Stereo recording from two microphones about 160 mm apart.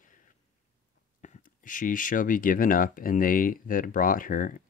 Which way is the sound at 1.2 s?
55° left (ahead or behind).